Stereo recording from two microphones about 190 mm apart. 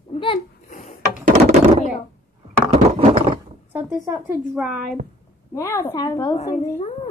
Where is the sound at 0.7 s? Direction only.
45° left (ahead or behind).